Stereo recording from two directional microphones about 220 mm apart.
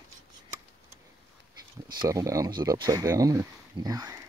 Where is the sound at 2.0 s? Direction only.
15° right (ahead or behind).